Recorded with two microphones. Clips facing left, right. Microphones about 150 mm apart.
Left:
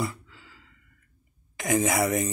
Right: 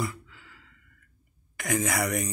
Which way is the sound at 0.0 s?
25° left (ahead or behind).